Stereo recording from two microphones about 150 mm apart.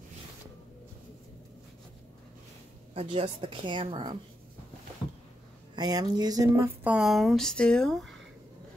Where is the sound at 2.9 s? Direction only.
40° right (ahead or behind).